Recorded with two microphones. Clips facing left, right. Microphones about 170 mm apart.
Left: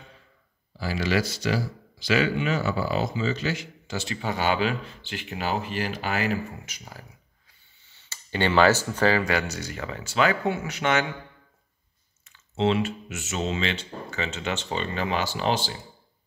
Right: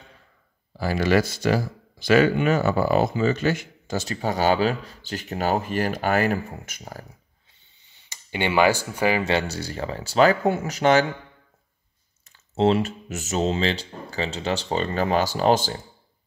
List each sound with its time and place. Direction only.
0.7 s speech: 50° right (ahead or behind)
7.8 s speech: 15° right (ahead or behind)
9.2 s speech: 25° right (ahead or behind)
12.3 s speech: 40° right (ahead or behind)